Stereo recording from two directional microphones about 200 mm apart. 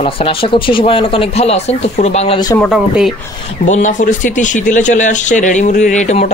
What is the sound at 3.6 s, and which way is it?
A man's voice, 35° left (ahead or behind).